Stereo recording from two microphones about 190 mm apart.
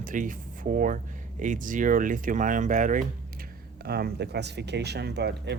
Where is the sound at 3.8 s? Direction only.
55° right (ahead or behind).